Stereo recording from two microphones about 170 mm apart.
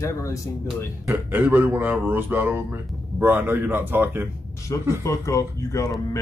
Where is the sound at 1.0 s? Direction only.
10° right (ahead or behind).